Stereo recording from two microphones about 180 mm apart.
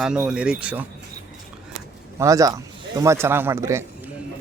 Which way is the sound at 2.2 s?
20° right (ahead or behind).